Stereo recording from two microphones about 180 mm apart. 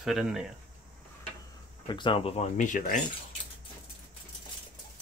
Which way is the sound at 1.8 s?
25° left (ahead or behind).